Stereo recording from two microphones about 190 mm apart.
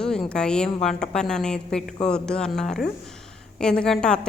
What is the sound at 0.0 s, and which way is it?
A woman's voice, 5° left (ahead or behind).